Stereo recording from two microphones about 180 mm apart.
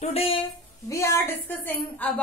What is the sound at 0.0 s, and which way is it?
Speech, 35° left (ahead or behind).